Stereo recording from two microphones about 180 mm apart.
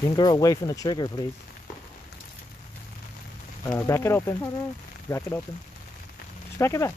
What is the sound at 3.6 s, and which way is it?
Speech, 15° left (ahead or behind).